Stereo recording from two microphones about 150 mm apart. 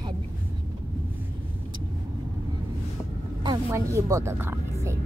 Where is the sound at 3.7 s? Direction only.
20° right (ahead or behind).